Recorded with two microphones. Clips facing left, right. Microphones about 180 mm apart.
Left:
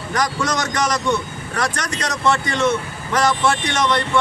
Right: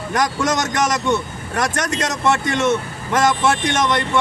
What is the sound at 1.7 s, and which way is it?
Speech, 45° right (ahead or behind).